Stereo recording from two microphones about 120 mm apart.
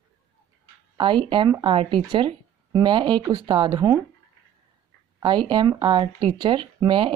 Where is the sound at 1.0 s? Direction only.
45° right (ahead or behind).